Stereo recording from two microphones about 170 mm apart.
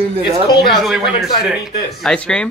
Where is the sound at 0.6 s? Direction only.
Centre (ahead or behind).